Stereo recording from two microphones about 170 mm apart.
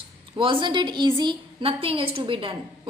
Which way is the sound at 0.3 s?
30° right (ahead or behind).